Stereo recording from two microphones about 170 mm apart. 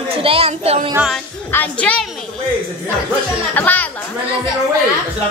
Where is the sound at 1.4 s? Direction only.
10° left (ahead or behind).